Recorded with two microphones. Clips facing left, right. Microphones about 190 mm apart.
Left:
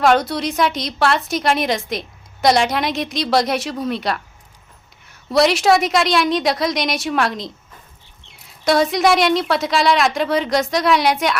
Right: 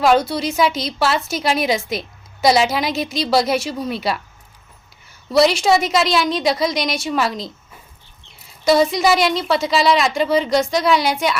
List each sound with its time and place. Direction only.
0.0 s a woman's voice: centre (ahead or behind)